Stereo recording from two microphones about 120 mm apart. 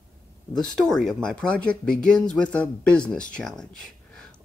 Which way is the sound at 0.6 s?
5° left (ahead or behind).